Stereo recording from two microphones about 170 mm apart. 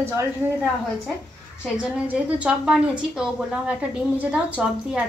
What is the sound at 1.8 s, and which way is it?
A woman's voice, 5° right (ahead or behind).